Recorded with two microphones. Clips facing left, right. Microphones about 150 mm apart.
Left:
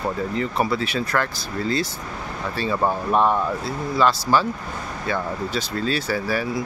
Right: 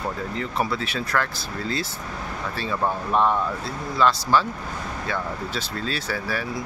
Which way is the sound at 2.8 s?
10° left (ahead or behind).